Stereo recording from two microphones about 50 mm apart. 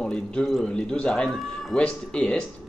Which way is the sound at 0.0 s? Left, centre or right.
Centre.